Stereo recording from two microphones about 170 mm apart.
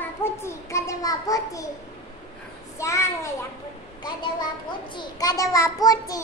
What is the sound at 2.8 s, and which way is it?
Speech, 15° left (ahead or behind).